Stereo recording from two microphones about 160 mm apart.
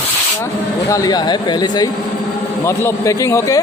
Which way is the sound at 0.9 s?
25° left (ahead or behind).